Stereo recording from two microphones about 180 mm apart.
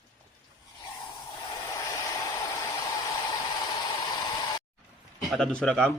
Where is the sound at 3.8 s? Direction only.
20° left (ahead or behind).